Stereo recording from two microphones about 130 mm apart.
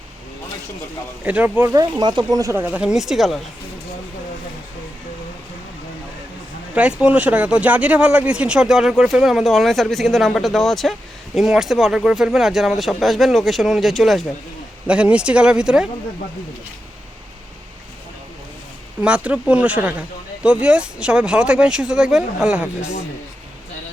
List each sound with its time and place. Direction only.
1.2 s speech: 10° right (ahead or behind)
1.7 s speech: 35° right (ahead or behind); by 3.4 s centre (ahead or behind)
6.7 s speech: 10° right (ahead or behind)
19.0 s speech: 10° right (ahead or behind)